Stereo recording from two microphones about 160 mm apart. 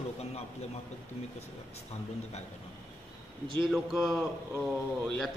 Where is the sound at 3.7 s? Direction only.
Centre (ahead or behind).